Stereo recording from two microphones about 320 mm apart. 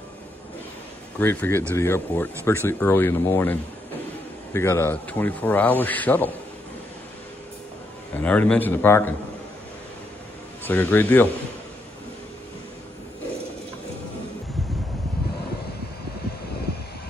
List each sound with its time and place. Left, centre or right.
1.2 s speech: centre
4.6 s speech: centre
8.2 s speech: centre
10.6 s speech: centre